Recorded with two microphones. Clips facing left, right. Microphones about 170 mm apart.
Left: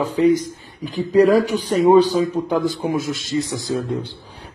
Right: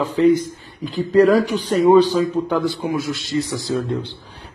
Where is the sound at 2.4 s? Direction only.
40° left (ahead or behind).